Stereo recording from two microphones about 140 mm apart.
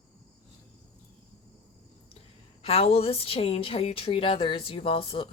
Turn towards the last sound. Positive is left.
turn(degrees=40)  # may be behind; listen again after turning